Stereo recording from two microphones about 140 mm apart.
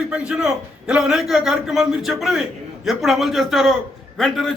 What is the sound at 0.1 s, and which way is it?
A man's voice, 5° right (ahead or behind).